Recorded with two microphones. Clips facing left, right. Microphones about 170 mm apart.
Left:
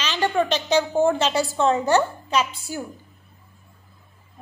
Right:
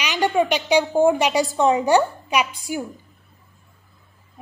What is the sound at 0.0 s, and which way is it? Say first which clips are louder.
A woman's voice: right 2 dB; 10° right (ahead or behind).